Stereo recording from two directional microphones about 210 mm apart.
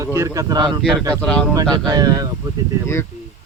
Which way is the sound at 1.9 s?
20° right (ahead or behind).